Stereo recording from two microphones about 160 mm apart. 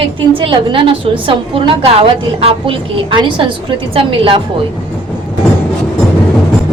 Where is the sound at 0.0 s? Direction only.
35° right (ahead or behind).